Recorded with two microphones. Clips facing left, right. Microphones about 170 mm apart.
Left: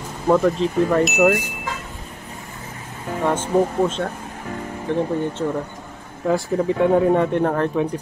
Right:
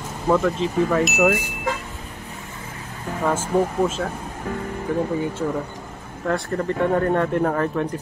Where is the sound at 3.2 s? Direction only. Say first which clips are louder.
Left 2 dB; 5° right (ahead or behind).